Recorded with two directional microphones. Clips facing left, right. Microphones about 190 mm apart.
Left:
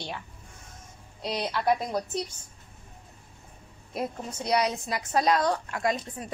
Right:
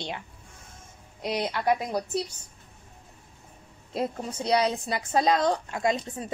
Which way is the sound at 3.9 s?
30° right (ahead or behind).